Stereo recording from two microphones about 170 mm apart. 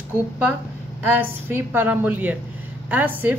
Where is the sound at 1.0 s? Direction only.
10° right (ahead or behind).